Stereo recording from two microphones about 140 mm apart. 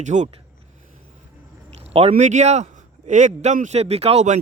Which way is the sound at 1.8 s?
45° right (ahead or behind).